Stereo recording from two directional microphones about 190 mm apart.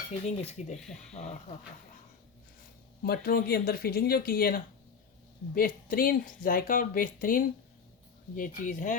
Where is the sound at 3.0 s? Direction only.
55° left (ahead or behind).